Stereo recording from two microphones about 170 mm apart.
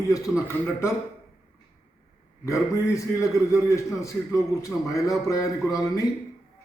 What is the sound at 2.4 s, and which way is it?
A man's voice, 20° left (ahead or behind).